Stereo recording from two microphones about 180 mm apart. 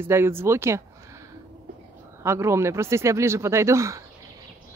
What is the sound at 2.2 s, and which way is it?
Speech, 15° right (ahead or behind).